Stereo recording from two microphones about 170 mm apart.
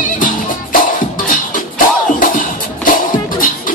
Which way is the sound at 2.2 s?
50° left (ahead or behind).